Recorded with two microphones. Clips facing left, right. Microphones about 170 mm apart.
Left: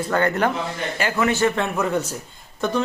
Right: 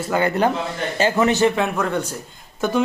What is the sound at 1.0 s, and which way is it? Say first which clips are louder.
Speech: right 4 dB; 25° right (ahead or behind).